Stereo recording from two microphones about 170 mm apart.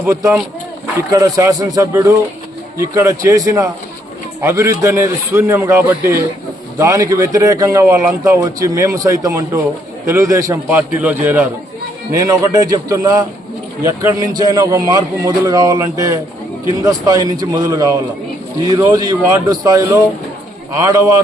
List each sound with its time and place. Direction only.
0.0 s a man's voice: 20° right (ahead or behind)